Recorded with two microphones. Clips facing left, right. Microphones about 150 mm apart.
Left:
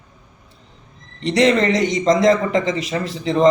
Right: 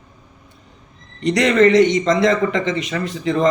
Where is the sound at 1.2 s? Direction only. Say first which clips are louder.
Right 2 dB; 30° left (ahead or behind).